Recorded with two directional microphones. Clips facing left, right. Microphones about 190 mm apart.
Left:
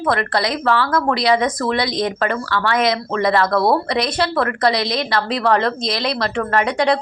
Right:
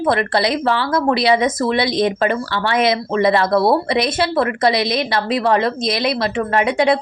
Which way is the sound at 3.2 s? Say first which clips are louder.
Right 2 dB; 15° right (ahead or behind).